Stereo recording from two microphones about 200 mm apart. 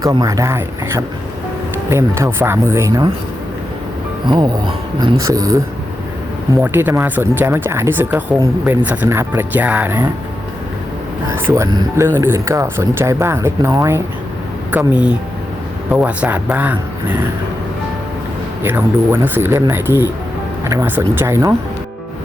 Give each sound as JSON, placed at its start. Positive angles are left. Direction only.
{"t": 0.0, "sound": "speech", "side_deg": -20}
{"t": 4.3, "sound": "speech", "side_deg": -20}
{"t": 11.3, "sound": "speech", "side_deg": -15}
{"t": 18.6, "sound": "speech", "side_deg": -10}